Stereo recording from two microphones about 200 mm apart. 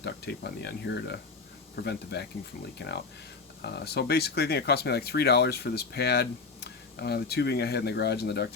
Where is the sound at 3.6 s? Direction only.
55° left (ahead or behind).